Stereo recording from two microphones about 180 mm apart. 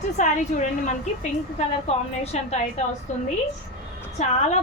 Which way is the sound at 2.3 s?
40° left (ahead or behind).